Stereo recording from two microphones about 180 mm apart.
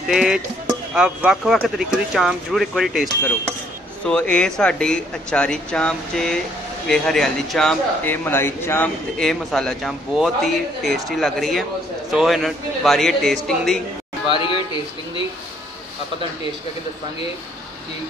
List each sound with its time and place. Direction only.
0.1 s speech: centre (ahead or behind)
14.3 s a man's voice: 25° left (ahead or behind)